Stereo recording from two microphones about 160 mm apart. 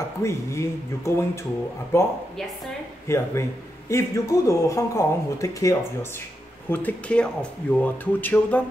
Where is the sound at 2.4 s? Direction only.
5° left (ahead or behind).